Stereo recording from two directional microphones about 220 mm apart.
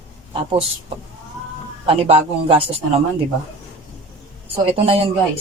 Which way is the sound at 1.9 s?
25° right (ahead or behind).